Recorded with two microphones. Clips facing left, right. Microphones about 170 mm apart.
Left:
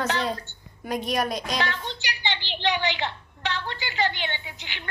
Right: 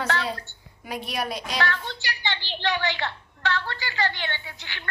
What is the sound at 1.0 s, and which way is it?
Speech, 45° left (ahead or behind).